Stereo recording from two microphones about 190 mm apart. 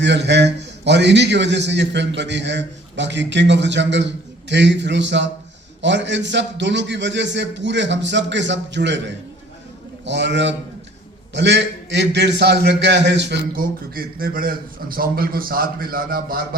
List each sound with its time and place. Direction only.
0.0 s a man's voice: 65° right (ahead or behind); by 16.6 s 50° right (ahead or behind)